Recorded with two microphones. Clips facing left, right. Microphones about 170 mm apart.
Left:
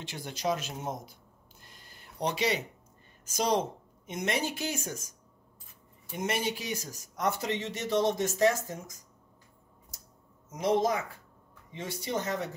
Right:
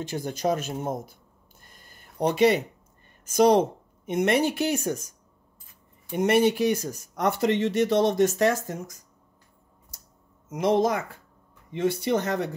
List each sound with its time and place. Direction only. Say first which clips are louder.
0.0 s speech: right 7 dB; 45° right (ahead or behind)
1.6 s a sound: right 1 dB; 50° right (ahead or behind)
3.3 s speech: right 10 dB; 60° right (ahead or behind)
6.1 s speech: right 11 dB; 60° right (ahead or behind)
10.5 s speech: right 5 dB; 65° right (ahead or behind)